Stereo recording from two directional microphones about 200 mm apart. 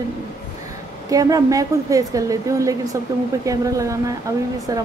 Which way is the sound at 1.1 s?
15° right (ahead or behind).